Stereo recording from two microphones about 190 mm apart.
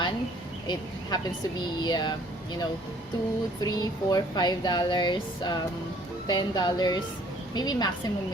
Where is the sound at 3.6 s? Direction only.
20° left (ahead or behind).